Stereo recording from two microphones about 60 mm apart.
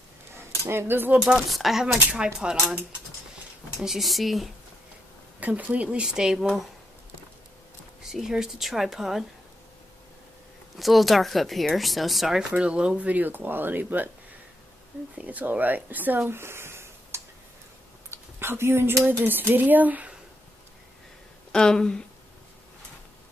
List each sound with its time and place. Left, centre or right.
0.7 s speech: right
1.2 s speech: centre
2.4 s speech: centre
3.7 s speech: centre
5.4 s speech: right
5.9 s speech: centre
8.0 s speech: centre
10.8 s speech: centre
12.4 s speech: centre
15.1 s speech: right
21.5 s speech: centre